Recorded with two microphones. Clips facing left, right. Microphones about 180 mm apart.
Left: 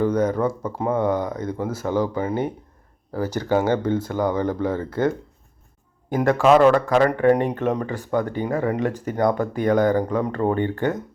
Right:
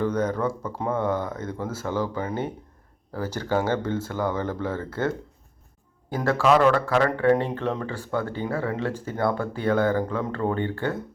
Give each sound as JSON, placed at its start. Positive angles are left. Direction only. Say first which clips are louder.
{"t": 0.0, "sound": "speech", "louder": "left 4 dB", "side_deg": 10}